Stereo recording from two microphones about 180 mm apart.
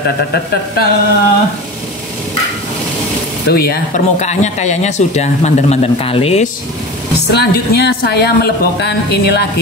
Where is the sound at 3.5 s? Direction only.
55° left (ahead or behind).